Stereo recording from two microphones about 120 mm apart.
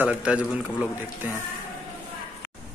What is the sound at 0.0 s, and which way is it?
A man's voice, 10° right (ahead or behind).